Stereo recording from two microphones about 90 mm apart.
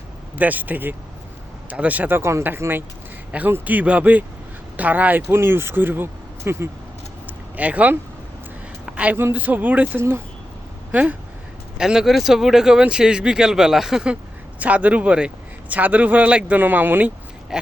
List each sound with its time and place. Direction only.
0.3 s speech: 20° right (ahead or behind)
7.5 s speech: 15° right (ahead or behind)
8.9 s a sound: 15° right (ahead or behind)
9.1 s speech: 20° right (ahead or behind)
17.5 s speech: 5° right (ahead or behind)